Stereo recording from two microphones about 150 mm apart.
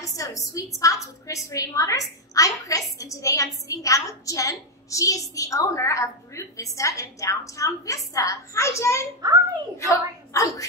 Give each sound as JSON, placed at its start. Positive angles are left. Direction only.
{"t": 0.0, "sound": "a woman's voice", "side_deg": 20}
{"t": 9.2, "sound": "a child's voice", "side_deg": -25}
{"t": 9.8, "sound": "a woman's voice", "side_deg": 20}